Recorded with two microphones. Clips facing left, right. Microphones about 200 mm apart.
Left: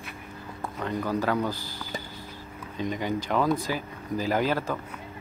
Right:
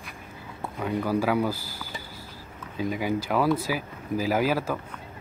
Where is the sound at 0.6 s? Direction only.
10° right (ahead or behind).